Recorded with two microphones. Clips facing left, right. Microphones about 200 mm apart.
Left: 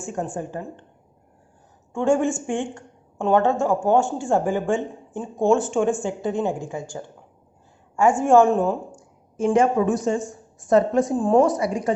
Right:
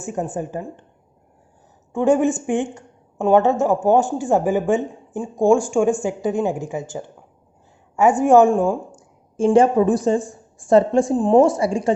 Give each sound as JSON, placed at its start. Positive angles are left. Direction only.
{"t": 0.3, "sound": "speech", "side_deg": -15}
{"t": 1.9, "sound": "speech", "side_deg": -15}
{"t": 9.4, "sound": "a woman's voice", "side_deg": -30}